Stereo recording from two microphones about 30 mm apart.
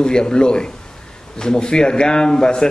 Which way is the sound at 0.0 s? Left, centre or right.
Left.